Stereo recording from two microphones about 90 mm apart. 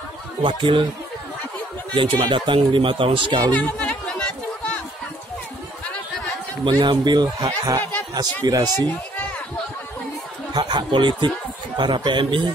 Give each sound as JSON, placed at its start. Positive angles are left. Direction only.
{"t": 0.4, "sound": "speech", "side_deg": -65}
{"t": 2.0, "sound": "speech", "side_deg": -65}
{"t": 3.5, "sound": "a sound", "side_deg": 15}
{"t": 6.7, "sound": "a man's voice", "side_deg": -55}
{"t": 7.4, "sound": "a man's voice", "side_deg": -35}
{"t": 10.5, "sound": "a man's voice", "side_deg": -60}